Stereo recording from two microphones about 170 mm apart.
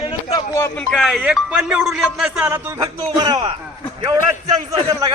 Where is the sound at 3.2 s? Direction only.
20° right (ahead or behind).